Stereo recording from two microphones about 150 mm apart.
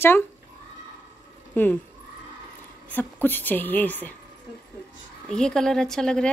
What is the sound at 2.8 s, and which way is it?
A woman's voice, 10° left (ahead or behind).